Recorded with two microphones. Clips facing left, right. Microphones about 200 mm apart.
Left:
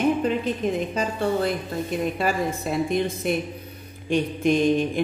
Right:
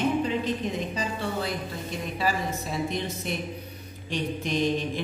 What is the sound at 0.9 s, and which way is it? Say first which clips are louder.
A woman's voice: left 6 dB; 50° left (ahead or behind).